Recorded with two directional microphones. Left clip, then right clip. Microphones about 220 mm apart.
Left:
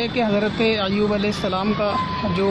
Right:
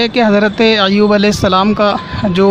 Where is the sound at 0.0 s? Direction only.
40° right (ahead or behind).